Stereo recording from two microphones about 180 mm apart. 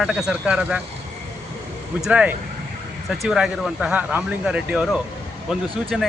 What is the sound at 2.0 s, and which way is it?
Speech, 5° right (ahead or behind).